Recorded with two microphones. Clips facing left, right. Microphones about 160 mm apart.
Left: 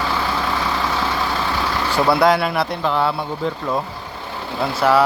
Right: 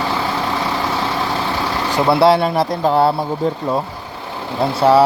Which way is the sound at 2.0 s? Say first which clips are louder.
Right 3 dB; 25° right (ahead or behind).